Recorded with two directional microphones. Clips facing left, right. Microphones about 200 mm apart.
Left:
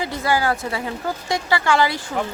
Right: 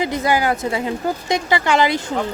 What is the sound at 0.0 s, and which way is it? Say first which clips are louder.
Speech: right 3 dB; 20° right (ahead or behind).